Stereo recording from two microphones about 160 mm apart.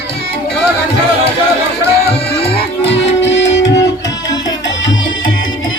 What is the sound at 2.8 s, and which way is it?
Music, 90° left.